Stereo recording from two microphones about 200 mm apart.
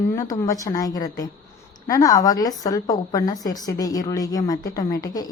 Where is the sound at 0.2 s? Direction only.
15° left (ahead or behind).